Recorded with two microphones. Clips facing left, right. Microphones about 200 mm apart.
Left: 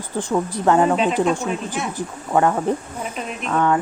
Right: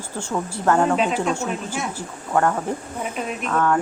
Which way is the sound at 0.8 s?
Centre (ahead or behind).